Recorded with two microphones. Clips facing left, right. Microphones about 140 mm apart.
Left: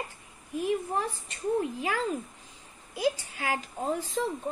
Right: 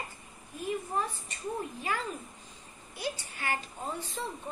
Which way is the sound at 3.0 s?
90° left.